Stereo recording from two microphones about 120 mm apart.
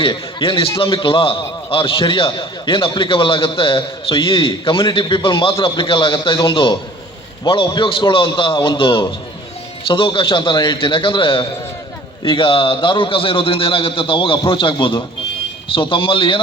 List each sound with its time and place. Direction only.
0.0 s a man's voice: 40° left (ahead or behind)